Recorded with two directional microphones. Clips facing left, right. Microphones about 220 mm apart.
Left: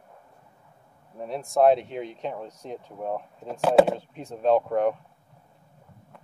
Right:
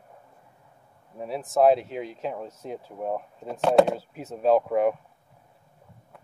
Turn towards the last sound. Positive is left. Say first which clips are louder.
# right 1 dB
turn(degrees=-5)  # may be behind; listen again after turning